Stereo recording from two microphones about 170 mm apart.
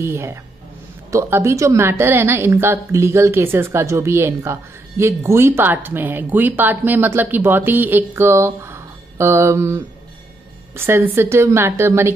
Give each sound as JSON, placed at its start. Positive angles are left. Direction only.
{"t": 0.0, "sound": "a woman's voice", "side_deg": -15}